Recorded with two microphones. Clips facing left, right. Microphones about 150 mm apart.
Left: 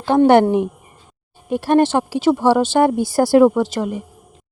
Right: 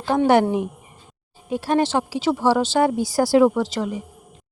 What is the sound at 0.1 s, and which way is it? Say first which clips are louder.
A woman's voice: left 5 dB; 60° left (ahead or behind).